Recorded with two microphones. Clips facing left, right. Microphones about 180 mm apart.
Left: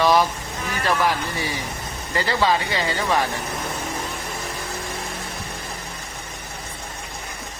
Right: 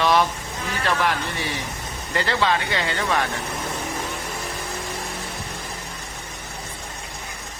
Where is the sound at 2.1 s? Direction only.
5° left (ahead or behind).